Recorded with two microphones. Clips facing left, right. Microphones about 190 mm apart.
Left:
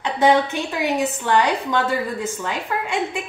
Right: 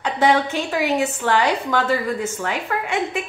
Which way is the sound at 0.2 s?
15° left (ahead or behind).